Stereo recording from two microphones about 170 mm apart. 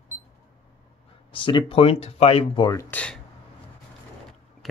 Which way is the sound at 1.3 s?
30° left (ahead or behind).